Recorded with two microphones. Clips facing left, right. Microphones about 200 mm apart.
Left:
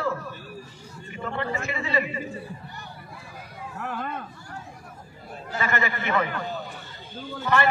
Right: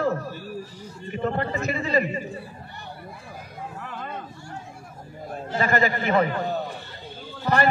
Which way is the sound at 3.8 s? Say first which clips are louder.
Left 8 dB; 55° left (ahead or behind).